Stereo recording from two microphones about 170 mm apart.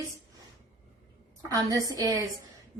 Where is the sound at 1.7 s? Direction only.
20° right (ahead or behind).